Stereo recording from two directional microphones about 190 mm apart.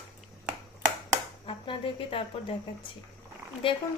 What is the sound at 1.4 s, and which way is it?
Speech, 25° left (ahead or behind).